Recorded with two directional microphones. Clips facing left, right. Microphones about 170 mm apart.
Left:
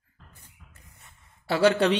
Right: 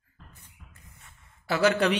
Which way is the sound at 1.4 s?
30° left (ahead or behind).